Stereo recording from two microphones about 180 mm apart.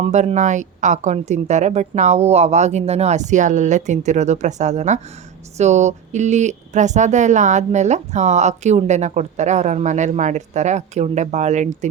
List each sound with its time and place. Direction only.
0.0 s speech: 35° right (ahead or behind)